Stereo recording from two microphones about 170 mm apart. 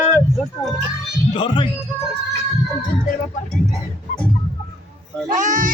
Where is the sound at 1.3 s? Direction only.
25° left (ahead or behind).